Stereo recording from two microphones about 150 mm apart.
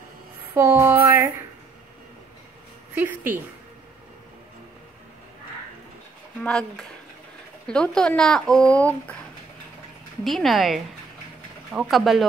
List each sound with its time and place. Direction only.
0.6 s music: 20° right (ahead or behind)
2.9 s a woman's voice: 15° right (ahead or behind)
6.4 s speech: 5° left (ahead or behind)
10.2 s speech: centre (ahead or behind)